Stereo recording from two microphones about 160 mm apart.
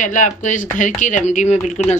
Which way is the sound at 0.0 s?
50° left (ahead or behind).